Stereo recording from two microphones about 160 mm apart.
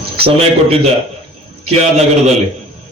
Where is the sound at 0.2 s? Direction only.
35° right (ahead or behind).